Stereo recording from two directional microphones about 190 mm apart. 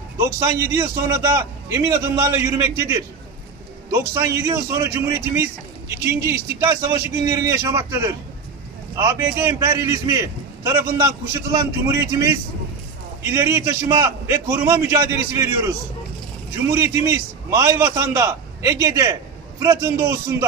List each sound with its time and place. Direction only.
0.2 s a man's voice: 15° right (ahead or behind)